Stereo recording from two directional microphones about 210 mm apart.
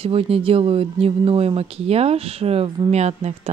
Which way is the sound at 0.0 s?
25° right (ahead or behind).